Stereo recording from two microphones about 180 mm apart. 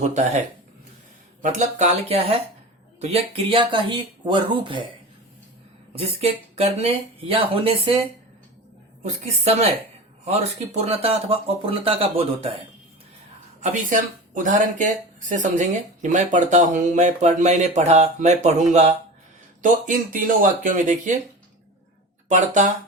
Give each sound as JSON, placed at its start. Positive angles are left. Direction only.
{"t": 0.0, "sound": "speech", "side_deg": -40}
{"t": 5.9, "sound": "speech", "side_deg": -35}
{"t": 9.0, "sound": "speech", "side_deg": -35}
{"t": 14.4, "sound": "speech", "side_deg": -45}
{"t": 22.3, "sound": "speech", "side_deg": -45}